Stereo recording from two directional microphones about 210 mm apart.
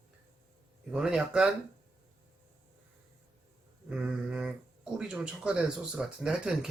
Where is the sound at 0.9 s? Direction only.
5° right (ahead or behind).